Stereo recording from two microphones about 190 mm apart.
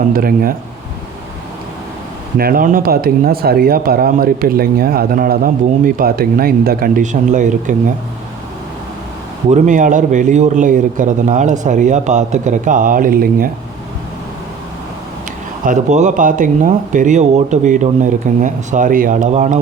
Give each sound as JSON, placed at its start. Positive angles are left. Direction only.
{"t": 0.1, "sound": "speech", "side_deg": -50}
{"t": 2.4, "sound": "speech", "side_deg": -50}
{"t": 9.5, "sound": "a man's voice", "side_deg": -40}
{"t": 15.6, "sound": "a man's voice", "side_deg": -40}